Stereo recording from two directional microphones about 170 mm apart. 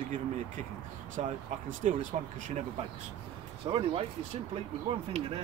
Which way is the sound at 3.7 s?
30° right (ahead or behind).